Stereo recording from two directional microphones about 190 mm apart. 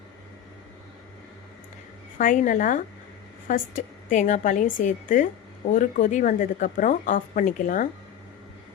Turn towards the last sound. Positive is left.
turn(degrees=45)  # may be behind; listen again after turning